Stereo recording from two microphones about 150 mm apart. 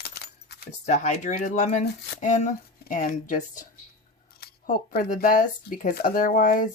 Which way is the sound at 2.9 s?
60° left (ahead or behind).